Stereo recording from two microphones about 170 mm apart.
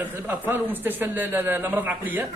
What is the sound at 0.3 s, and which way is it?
A man's voice, 10° right (ahead or behind).